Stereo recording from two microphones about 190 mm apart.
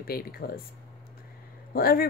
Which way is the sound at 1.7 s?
50° left (ahead or behind).